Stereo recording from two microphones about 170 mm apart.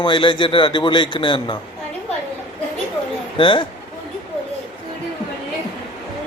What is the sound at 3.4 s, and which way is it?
Speech, 30° left (ahead or behind).